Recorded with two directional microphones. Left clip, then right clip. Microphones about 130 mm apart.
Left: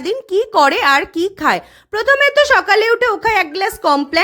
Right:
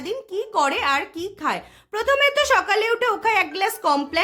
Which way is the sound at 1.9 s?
40° left (ahead or behind).